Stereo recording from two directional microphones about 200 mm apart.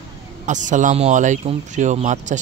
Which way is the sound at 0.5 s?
40° right (ahead or behind).